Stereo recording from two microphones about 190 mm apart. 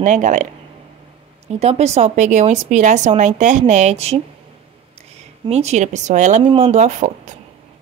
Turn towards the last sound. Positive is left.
turn(degrees=-40)  # may be behind; listen again after turning